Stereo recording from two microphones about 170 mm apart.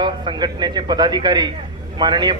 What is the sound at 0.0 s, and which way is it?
A man's voice, 25° right (ahead or behind).